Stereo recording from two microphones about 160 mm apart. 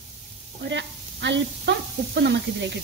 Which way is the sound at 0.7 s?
90° right.